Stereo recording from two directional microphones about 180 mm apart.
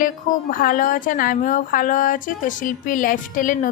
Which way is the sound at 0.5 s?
50° left (ahead or behind).